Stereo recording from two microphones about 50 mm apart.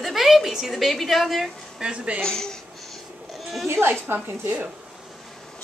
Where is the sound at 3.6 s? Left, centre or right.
Right.